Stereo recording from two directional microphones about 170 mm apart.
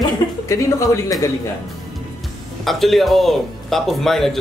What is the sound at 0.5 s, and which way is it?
Speech, 20° left (ahead or behind).